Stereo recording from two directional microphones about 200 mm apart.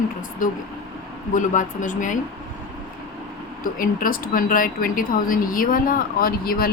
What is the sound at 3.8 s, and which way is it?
Speech, 45° left (ahead or behind).